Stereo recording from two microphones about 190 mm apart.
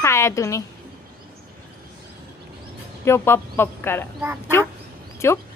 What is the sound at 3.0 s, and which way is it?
Speech, 15° left (ahead or behind).